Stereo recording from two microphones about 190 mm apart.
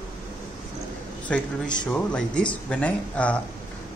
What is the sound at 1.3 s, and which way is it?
A man's voice, 5° left (ahead or behind).